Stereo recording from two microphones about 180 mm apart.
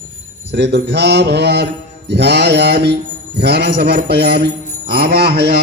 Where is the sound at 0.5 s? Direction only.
70° right (ahead or behind).